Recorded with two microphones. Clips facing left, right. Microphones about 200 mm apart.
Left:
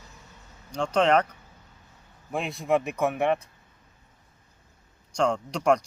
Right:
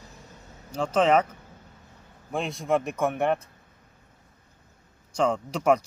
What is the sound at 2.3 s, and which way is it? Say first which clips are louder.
Speech: even; centre (ahead or behind).